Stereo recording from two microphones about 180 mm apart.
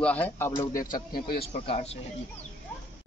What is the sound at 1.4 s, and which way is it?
Speech, 35° left (ahead or behind).